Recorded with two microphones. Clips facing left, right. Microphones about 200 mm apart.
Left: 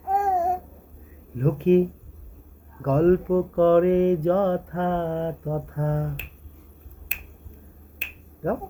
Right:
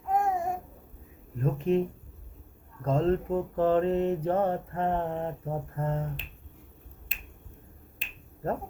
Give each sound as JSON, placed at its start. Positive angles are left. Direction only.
{"t": 0.0, "sound": "babbling", "side_deg": 50}
{"t": 1.4, "sound": "speech", "side_deg": 80}
{"t": 2.8, "sound": "mantra", "side_deg": 65}
{"t": 7.1, "sound": "finger snapping", "side_deg": 55}